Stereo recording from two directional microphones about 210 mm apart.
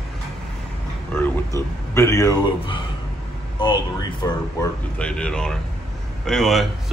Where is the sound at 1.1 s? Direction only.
10° left (ahead or behind).